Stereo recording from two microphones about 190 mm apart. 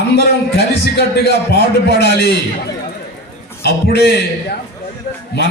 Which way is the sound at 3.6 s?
60° left (ahead or behind).